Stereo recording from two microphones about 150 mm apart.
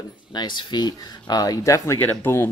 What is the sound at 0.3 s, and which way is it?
Speech, 30° left (ahead or behind).